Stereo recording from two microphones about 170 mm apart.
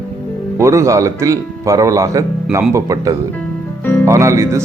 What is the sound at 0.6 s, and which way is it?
Speech, 15° right (ahead or behind).